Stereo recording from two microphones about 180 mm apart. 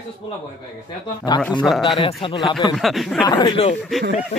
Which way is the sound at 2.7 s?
Centre (ahead or behind).